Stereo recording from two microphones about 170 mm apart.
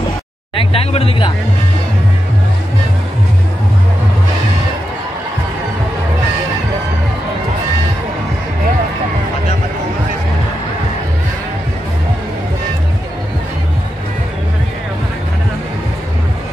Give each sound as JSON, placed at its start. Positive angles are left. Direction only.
{"t": 0.6, "sound": "speech", "side_deg": 35}